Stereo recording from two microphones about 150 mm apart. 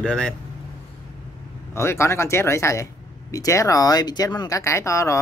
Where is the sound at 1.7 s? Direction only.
15° left (ahead or behind).